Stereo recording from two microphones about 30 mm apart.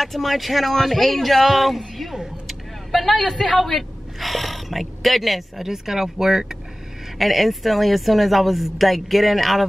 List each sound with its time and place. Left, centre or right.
0.0 s speech: centre
2.4 s vehicle: centre
3.5 s speech: centre
5.6 s speech: centre
7.2 s speech: centre